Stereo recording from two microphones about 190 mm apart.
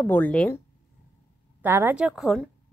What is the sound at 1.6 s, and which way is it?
Speech, 10° right (ahead or behind).